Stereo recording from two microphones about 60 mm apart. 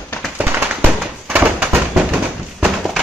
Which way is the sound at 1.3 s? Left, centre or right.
Right.